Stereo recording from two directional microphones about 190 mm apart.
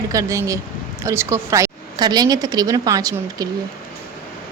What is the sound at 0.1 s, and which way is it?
A woman's voice, 15° right (ahead or behind).